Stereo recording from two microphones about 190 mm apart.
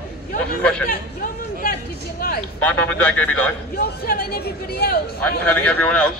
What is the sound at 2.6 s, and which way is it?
Speech, 10° left (ahead or behind).